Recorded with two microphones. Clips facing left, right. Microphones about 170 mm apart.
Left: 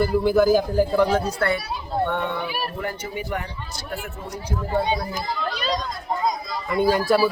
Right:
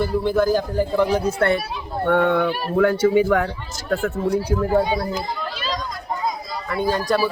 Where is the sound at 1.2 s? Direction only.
25° right (ahead or behind).